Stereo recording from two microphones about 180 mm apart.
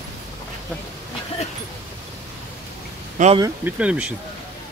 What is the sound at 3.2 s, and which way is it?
Speech, 45° right (ahead or behind).